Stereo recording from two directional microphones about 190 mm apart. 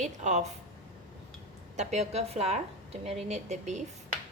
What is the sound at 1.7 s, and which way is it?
A woman's voice, 35° right (ahead or behind).